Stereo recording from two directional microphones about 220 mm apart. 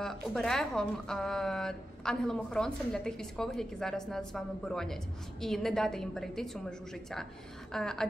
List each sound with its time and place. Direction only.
0.0 s a woman's voice: centre (ahead or behind)